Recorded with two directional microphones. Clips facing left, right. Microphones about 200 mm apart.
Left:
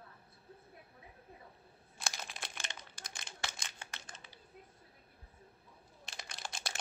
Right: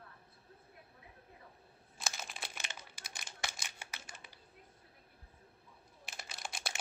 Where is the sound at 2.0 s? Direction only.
5° right (ahead or behind).